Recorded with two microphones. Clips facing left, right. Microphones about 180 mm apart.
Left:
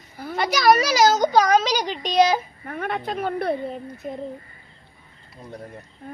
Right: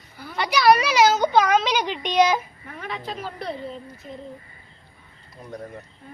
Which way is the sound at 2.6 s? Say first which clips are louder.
Left 9 dB; 55° left (ahead or behind).